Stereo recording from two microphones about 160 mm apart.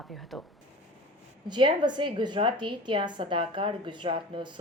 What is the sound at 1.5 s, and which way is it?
A woman's voice, 30° right (ahead or behind).